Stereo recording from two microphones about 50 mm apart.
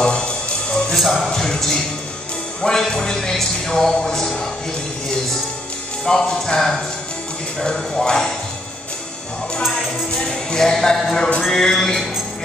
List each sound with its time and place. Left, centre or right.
0.0 s music: centre
0.9 s speech: centre
6.0 s speech: centre
10.1 s music: centre
10.6 s speech: centre